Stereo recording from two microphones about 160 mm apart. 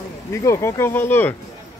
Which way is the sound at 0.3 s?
20° left (ahead or behind).